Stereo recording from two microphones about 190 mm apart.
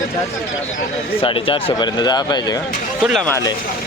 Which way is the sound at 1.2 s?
30° left (ahead or behind).